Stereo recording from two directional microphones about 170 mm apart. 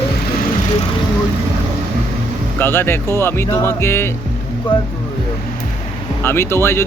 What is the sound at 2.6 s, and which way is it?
Speech, 10° left (ahead or behind).